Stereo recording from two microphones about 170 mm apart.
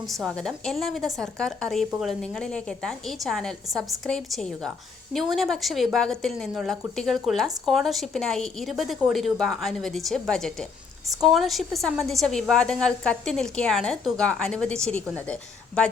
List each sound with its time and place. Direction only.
0.0 s a woman's voice: centre (ahead or behind)